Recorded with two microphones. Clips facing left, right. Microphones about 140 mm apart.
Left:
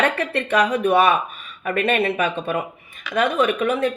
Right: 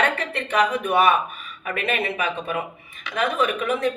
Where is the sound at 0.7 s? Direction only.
35° left (ahead or behind).